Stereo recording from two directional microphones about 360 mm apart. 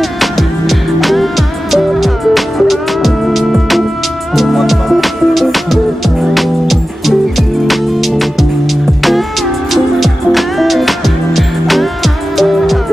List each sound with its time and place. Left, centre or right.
0.2 s music: centre
9.7 s music: centre